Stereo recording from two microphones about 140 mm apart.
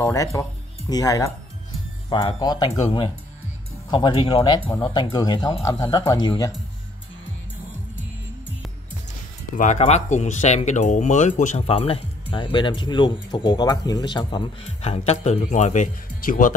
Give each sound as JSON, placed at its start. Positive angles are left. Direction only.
{"t": 0.0, "sound": "speech", "side_deg": 20}
{"t": 2.0, "sound": "speech", "side_deg": 35}
{"t": 9.6, "sound": "speech", "side_deg": 55}
{"t": 14.8, "sound": "speech", "side_deg": 50}